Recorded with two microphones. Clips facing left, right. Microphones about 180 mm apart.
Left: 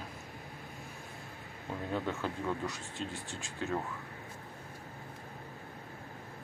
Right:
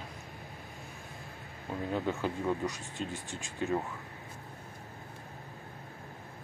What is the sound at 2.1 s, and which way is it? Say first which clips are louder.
Speech: right 3 dB; 15° right (ahead or behind).